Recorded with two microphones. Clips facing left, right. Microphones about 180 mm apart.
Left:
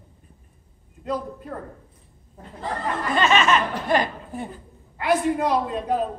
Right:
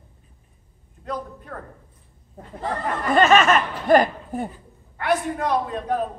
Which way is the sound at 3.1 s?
45° right (ahead or behind).